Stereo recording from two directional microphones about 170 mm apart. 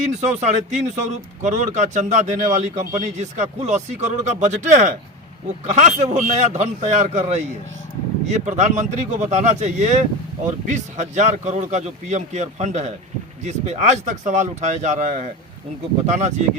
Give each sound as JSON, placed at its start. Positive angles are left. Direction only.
{"t": 0.0, "sound": "speech", "side_deg": -45}